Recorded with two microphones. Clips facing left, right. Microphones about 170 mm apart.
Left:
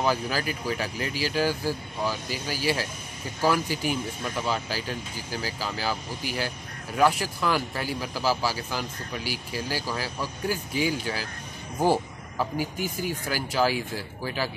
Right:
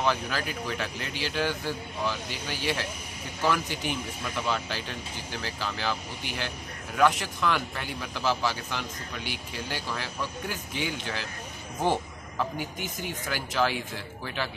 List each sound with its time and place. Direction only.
0.0 s speech: 10° left (ahead or behind)
1.3 s speech: 35° left (ahead or behind)
2.0 s speech: 10° left (ahead or behind)
14.2 s speech: 5° left (ahead or behind)